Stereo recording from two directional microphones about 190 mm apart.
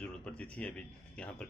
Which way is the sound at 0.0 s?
5° left (ahead or behind).